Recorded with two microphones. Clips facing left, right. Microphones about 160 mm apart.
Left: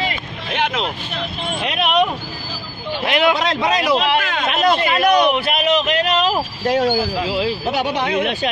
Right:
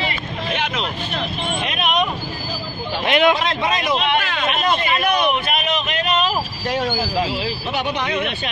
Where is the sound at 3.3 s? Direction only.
80° left.